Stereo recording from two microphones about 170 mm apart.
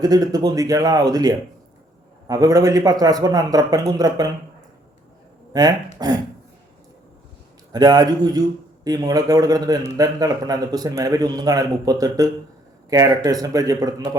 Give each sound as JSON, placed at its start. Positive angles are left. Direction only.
{"t": 0.0, "sound": "a man's voice", "side_deg": -20}
{"t": 5.5, "sound": "a man's voice", "side_deg": -25}
{"t": 7.7, "sound": "a man's voice", "side_deg": -25}